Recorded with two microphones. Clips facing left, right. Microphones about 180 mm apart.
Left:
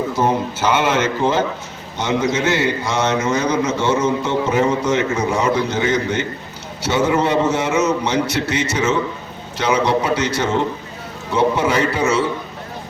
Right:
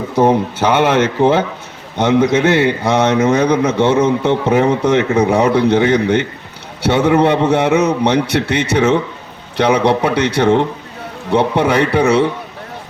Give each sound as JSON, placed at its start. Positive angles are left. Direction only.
{"t": 0.2, "sound": "a man's voice", "side_deg": -60}